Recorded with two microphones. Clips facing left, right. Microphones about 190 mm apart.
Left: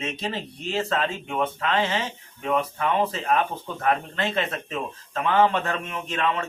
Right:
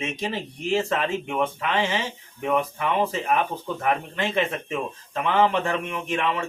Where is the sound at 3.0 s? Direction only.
15° right (ahead or behind).